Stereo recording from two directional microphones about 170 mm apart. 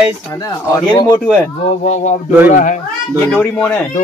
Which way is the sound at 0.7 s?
25° left (ahead or behind).